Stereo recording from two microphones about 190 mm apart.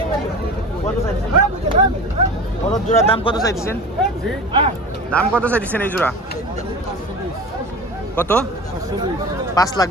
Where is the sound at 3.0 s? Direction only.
30° left (ahead or behind).